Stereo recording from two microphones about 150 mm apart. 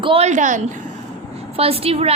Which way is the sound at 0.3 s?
55° right (ahead or behind).